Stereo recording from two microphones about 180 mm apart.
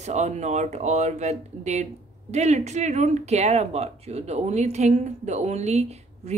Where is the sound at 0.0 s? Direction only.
40° right (ahead or behind).